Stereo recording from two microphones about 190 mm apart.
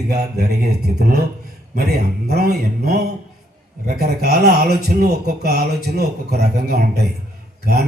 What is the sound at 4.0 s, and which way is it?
Speech, 55° right (ahead or behind).